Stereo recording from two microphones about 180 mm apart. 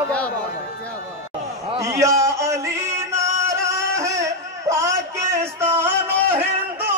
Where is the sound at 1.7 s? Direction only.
15° right (ahead or behind).